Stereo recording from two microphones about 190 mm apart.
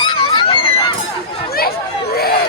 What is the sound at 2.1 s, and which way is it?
Chatter, 55° left (ahead or behind).